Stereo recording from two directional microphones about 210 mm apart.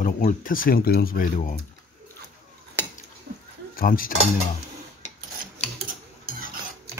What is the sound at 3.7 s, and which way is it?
Cutlery, 45° left (ahead or behind).